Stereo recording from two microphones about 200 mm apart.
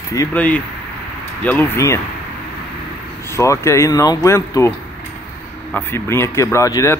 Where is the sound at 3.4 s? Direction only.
15° left (ahead or behind).